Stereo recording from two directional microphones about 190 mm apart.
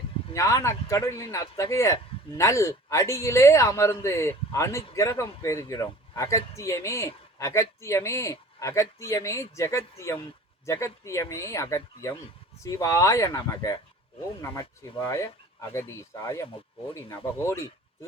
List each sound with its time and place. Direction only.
0.3 s a man's voice: 15° left (ahead or behind)